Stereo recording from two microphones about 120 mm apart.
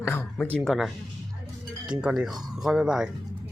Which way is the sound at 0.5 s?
Centre (ahead or behind).